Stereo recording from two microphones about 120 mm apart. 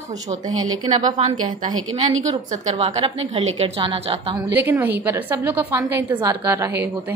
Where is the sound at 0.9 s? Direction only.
70° right (ahead or behind).